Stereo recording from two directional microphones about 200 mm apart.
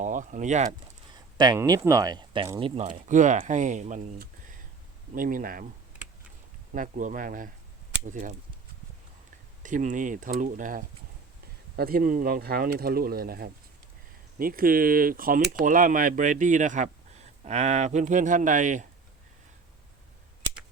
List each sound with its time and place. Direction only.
0.0 s speech: 40° right (ahead or behind)
1.4 s speech: 20° right (ahead or behind)
2.8 s speech: 40° right (ahead or behind)
6.7 s speech: 40° right (ahead or behind)
9.6 s speech: 40° right (ahead or behind)